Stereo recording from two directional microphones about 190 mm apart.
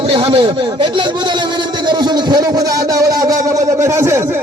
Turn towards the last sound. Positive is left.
turn(degrees=-10)  # may be behind; listen again after turning